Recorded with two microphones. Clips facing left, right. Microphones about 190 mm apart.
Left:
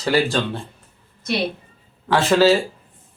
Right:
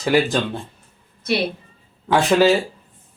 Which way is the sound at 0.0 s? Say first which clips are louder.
Right 1 dB; 20° right (ahead or behind).